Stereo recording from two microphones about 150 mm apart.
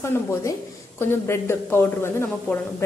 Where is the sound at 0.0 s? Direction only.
20° left (ahead or behind).